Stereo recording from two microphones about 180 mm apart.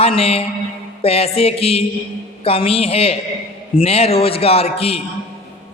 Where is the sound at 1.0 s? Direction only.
35° left (ahead or behind).